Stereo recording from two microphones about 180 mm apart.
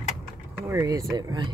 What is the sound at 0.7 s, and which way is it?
Speech, 20° right (ahead or behind).